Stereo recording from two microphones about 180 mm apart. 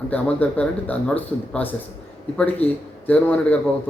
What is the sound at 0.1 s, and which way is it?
A man's voice, 10° left (ahead or behind).